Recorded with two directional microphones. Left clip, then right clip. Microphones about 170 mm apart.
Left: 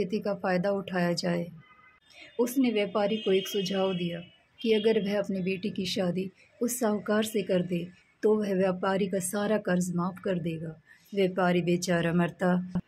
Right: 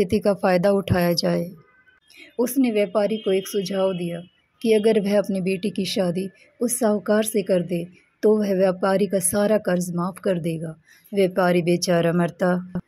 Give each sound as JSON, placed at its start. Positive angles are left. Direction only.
{"t": 0.0, "sound": "speech", "side_deg": -45}